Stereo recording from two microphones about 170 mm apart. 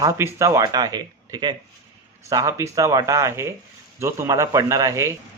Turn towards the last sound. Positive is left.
turn(degrees=-20)  # may be behind; listen again after turning